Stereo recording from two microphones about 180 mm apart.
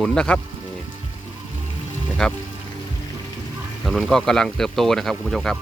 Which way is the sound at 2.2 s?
5° left (ahead or behind).